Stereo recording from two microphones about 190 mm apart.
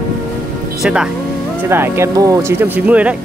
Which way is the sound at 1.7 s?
15° right (ahead or behind).